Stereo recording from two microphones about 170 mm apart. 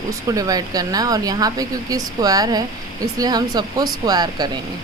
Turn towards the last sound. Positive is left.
turn(degrees=-20)  # may be behind; listen again after turning